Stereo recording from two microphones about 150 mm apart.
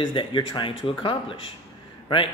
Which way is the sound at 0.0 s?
35° left (ahead or behind).